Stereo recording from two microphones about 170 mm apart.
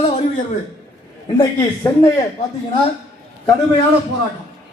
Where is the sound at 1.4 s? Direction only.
25° left (ahead or behind).